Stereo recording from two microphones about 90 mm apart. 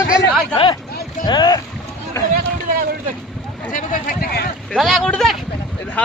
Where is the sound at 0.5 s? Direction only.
70° left (ahead or behind).